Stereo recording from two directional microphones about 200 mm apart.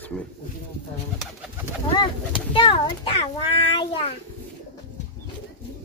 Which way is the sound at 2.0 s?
25° left (ahead or behind).